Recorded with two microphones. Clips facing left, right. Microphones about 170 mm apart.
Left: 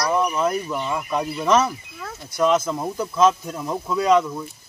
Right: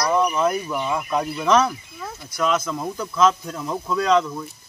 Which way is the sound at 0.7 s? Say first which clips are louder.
Right 1 dB; 5° right (ahead or behind).